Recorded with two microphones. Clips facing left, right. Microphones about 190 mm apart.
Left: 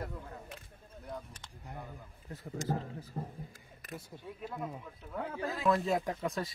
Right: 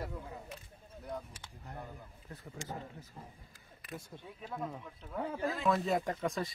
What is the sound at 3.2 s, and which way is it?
Speech, 55° left (ahead or behind).